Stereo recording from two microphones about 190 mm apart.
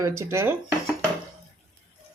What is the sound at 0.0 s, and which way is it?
Speech, 15° right (ahead or behind).